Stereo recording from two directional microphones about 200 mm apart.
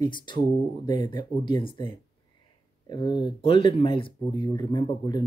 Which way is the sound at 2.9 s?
20° left (ahead or behind).